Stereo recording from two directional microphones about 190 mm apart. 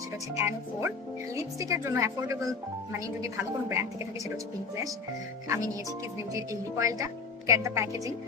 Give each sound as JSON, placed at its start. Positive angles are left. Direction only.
{"t": 0.3, "sound": "a woman's voice", "side_deg": -15}